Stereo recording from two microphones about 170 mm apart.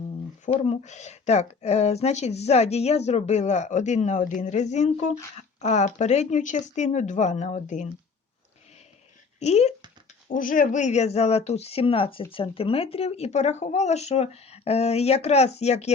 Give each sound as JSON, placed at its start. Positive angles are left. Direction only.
{"t": 0.5, "sound": "speech", "side_deg": 35}
{"t": 9.4, "sound": "speech", "side_deg": 40}
{"t": 10.2, "sound": "speech", "side_deg": 50}